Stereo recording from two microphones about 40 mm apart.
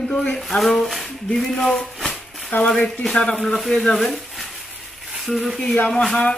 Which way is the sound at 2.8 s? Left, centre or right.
Left.